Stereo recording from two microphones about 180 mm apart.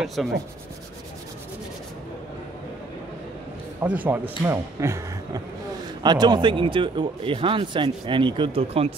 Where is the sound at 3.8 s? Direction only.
10° right (ahead or behind).